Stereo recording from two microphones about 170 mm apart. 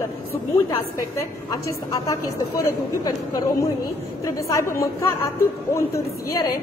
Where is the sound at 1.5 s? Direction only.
20° left (ahead or behind).